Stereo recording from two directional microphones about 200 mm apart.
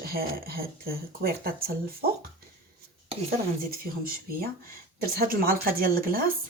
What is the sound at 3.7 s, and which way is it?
Speech, 50° right (ahead or behind).